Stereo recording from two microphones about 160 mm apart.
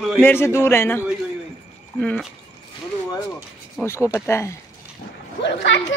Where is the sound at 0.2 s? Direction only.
15° left (ahead or behind).